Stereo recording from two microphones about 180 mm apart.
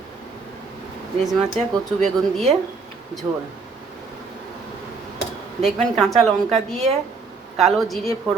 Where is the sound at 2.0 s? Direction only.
40° right (ahead or behind).